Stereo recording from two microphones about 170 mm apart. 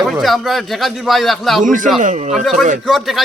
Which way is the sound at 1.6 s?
50° right (ahead or behind).